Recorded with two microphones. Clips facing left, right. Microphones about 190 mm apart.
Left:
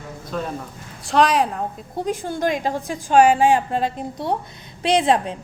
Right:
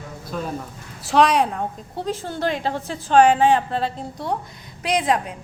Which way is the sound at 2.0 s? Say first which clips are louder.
Left 2 dB; 15° left (ahead or behind).